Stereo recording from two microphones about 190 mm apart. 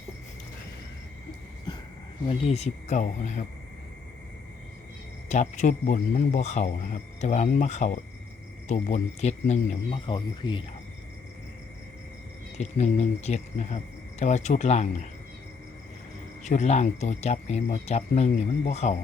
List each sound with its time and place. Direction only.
2.2 s a man's voice: 30° left (ahead or behind)
5.3 s a man's voice: 40° left (ahead or behind)
12.5 s a man's voice: 35° left (ahead or behind)
16.4 s a man's voice: 35° left (ahead or behind)